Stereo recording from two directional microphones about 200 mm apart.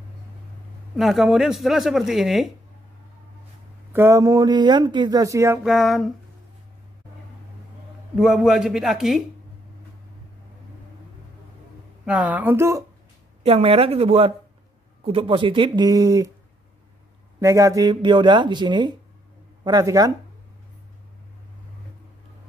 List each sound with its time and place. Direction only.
0.9 s speech: centre (ahead or behind)
3.9 s speech: 10° right (ahead or behind)
5.6 s speech: centre (ahead or behind)
8.2 s speech: centre (ahead or behind)
12.1 s speech: 5° right (ahead or behind)
13.4 s speech: 30° right (ahead or behind)
17.4 s speech: 15° right (ahead or behind)